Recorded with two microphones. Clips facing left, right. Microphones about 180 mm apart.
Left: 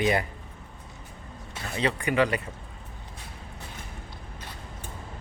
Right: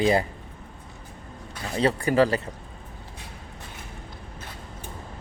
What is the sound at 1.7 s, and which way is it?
Speech, 35° right (ahead or behind).